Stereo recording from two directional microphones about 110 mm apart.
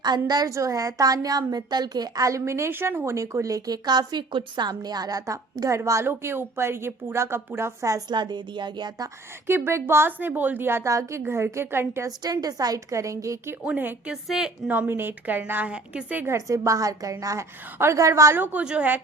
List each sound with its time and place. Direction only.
0.3 s a woman's voice: 35° right (ahead or behind)
8.1 s speech: 45° right (ahead or behind)
9.5 s a woman's voice: 20° right (ahead or behind)
12.2 s a woman's voice: 35° right (ahead or behind)
13.7 s speech: 15° right (ahead or behind)
14.1 s a woman's voice: 5° right (ahead or behind)
14.7 s a woman's voice: 20° right (ahead or behind)